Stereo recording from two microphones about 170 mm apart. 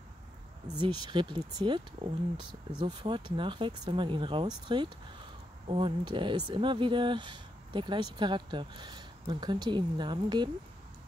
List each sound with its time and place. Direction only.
0.7 s speech: 25° right (ahead or behind)